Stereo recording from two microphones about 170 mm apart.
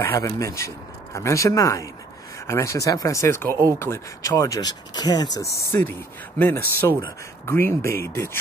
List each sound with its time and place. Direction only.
0.0 s speech: 15° left (ahead or behind)
5.7 s speech: 10° left (ahead or behind)